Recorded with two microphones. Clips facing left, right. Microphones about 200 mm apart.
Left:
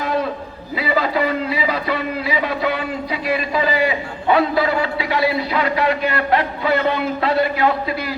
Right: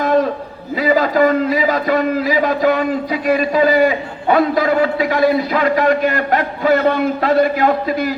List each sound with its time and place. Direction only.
0.8 s a man's voice: 45° right (ahead or behind)